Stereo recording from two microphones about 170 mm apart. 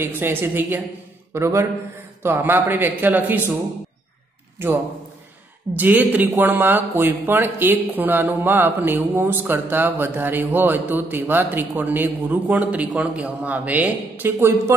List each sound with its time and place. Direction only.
0.0 s speech: 10° right (ahead or behind)
5.7 s speech: 10° right (ahead or behind)